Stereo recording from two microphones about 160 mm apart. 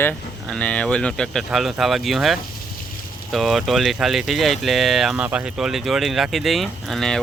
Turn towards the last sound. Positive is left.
turn(degrees=5)  # may be behind; listen again after turning